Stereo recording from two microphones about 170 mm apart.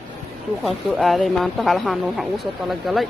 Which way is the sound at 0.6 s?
Centre (ahead or behind).